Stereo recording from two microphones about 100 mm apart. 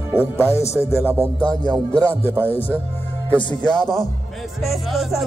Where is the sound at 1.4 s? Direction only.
40° right (ahead or behind).